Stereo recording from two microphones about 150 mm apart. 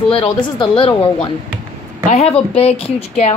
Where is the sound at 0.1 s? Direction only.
35° left (ahead or behind).